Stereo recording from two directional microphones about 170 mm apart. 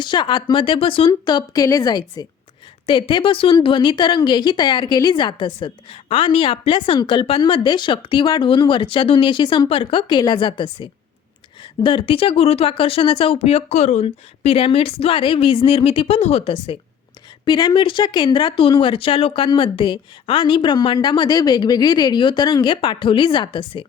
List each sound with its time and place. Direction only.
0.0 s a woman's voice: 25° left (ahead or behind)
17.4 s a woman's voice: 25° left (ahead or behind)